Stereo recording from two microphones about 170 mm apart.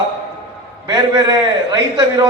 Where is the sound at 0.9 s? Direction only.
20° right (ahead or behind).